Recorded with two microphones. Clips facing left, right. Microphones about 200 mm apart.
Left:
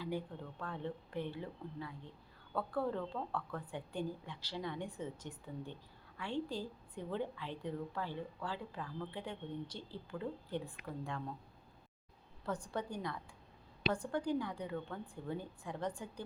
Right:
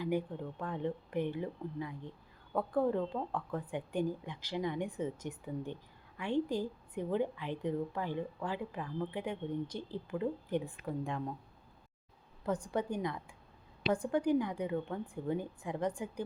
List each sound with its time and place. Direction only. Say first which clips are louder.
0.6 s a woman's voice: right 5 dB; 15° right (ahead or behind)
12.5 s a woman's voice: right 6 dB; 20° right (ahead or behind)